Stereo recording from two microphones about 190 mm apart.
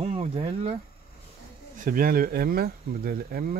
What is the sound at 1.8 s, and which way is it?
Speech, 50° right (ahead or behind).